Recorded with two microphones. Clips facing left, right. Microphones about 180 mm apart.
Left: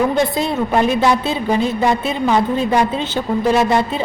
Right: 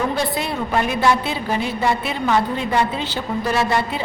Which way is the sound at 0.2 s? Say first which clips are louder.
Left 5 dB; 20° left (ahead or behind).